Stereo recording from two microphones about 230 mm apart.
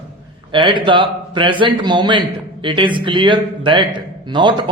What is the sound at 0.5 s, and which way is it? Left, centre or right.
A man's voice, right.